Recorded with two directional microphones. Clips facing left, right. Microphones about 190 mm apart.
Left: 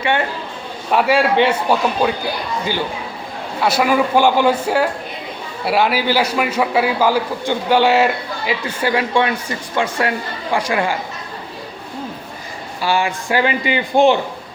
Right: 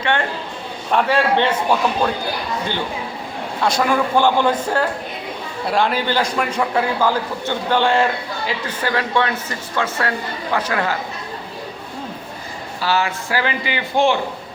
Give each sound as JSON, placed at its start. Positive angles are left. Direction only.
{"t": 0.0, "sound": "a man's voice", "side_deg": 10}
{"t": 3.6, "sound": "a man's voice", "side_deg": 5}
{"t": 12.8, "sound": "a man's voice", "side_deg": 15}